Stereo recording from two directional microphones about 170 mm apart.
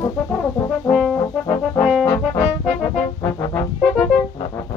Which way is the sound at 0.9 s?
Centre (ahead or behind).